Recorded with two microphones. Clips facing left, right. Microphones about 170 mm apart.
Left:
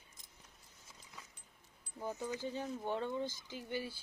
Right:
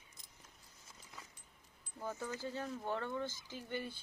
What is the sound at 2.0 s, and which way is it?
Speech, 15° left (ahead or behind).